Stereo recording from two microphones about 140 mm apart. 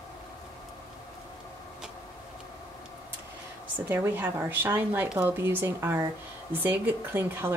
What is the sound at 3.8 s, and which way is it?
Speech, 15° right (ahead or behind).